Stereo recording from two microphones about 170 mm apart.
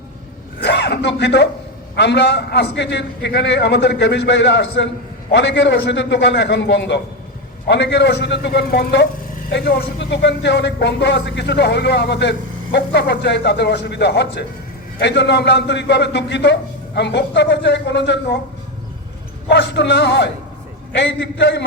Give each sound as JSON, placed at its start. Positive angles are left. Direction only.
{"t": 0.6, "sound": "a sound", "side_deg": 90}
{"t": 2.0, "sound": "speech", "side_deg": 85}
{"t": 19.5, "sound": "speech", "side_deg": 90}
{"t": 20.9, "sound": "speech", "side_deg": 90}